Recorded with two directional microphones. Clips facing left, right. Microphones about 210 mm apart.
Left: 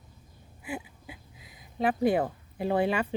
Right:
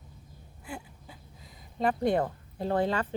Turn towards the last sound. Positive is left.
turn(degrees=10)  # may be behind; listen again after turning